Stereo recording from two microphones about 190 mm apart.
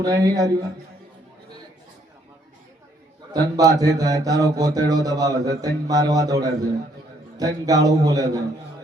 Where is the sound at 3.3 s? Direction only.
20° right (ahead or behind).